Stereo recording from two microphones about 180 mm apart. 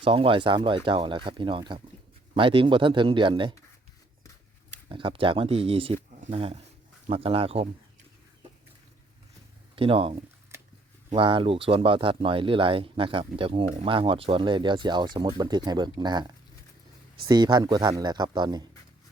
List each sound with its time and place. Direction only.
0.0 s speech: 30° right (ahead or behind)
4.9 s speech: 30° right (ahead or behind)
9.7 s speech: 30° right (ahead or behind)